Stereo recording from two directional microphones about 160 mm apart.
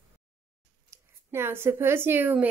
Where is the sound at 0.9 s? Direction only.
15° right (ahead or behind).